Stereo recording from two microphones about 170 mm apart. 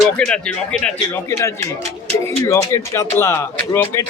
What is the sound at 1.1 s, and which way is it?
Speech, 15° left (ahead or behind).